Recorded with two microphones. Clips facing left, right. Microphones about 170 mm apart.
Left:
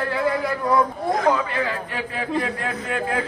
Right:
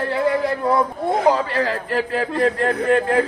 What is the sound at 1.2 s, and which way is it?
A man's voice, 35° right (ahead or behind).